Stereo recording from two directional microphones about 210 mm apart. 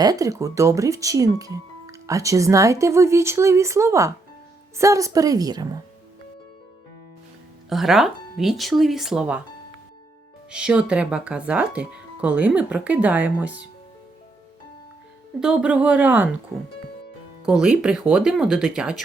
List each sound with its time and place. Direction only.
0.0 s speech: 15° right (ahead or behind)
7.7 s speech: centre (ahead or behind)
10.5 s speech: 5° right (ahead or behind)
15.4 s speech: 5° right (ahead or behind)
17.4 s speech: 5° right (ahead or behind)